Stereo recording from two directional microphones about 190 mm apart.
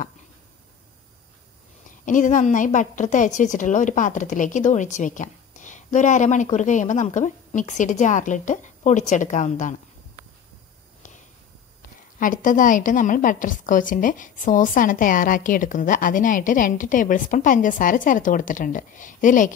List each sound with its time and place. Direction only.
2.0 s a woman's voice: 40° left (ahead or behind)
12.2 s a woman's voice: 45° left (ahead or behind)